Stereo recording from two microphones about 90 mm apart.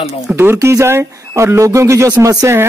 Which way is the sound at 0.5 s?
35° right (ahead or behind).